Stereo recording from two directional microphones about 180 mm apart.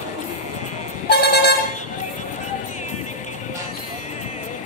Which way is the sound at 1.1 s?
65° left (ahead or behind).